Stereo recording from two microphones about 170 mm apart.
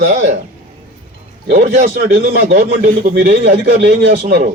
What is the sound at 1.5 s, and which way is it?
A man's voice, 50° right (ahead or behind).